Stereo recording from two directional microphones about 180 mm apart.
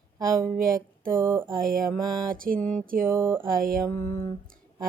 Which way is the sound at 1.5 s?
50° right (ahead or behind).